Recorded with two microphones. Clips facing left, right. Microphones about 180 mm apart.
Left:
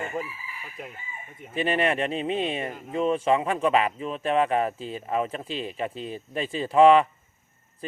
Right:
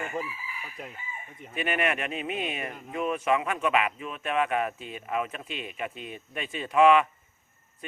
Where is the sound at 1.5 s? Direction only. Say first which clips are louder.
Left 4 dB; 30° left (ahead or behind).